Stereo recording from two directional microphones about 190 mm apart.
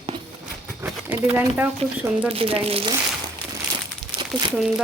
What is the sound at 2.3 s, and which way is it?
Speech, 30° right (ahead or behind).